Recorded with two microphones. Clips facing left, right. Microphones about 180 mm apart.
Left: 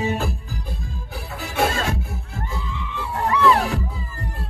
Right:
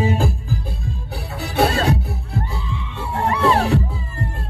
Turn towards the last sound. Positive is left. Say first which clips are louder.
# right 1 dB
turn(degrees=-30)  # may be behind; listen again after turning